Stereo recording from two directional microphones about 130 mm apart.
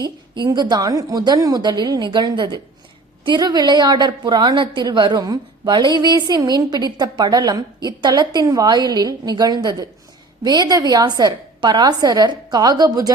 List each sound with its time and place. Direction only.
0.0 s a woman's voice: 35° right (ahead or behind)